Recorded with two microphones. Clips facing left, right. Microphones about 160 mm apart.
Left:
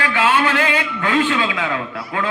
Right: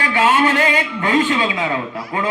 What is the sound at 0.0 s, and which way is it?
Music, 40° right (ahead or behind).